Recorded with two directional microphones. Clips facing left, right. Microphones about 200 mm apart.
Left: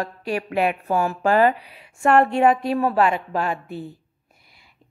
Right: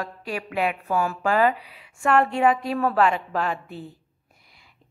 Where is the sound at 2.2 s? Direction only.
60° left (ahead or behind).